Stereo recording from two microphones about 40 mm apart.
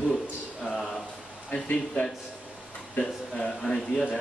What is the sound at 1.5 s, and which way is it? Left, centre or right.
Speech, left.